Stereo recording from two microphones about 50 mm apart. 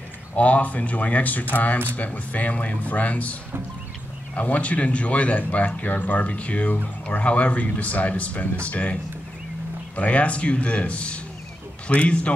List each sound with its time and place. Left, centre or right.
0.4 s speech: left
4.4 s speech: left
9.9 s speech: left